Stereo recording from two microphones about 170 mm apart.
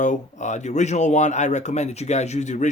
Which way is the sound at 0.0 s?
45° left (ahead or behind).